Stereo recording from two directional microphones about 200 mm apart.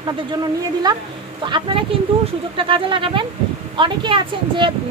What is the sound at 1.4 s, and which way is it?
Speech, 25° right (ahead or behind).